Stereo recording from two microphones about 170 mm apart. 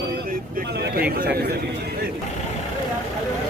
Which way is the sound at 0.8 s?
60° right (ahead or behind).